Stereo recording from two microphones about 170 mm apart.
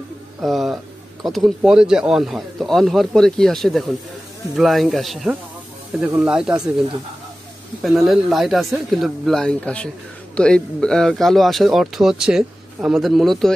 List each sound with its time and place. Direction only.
0.4 s speech: centre (ahead or behind)
7.8 s speech: centre (ahead or behind)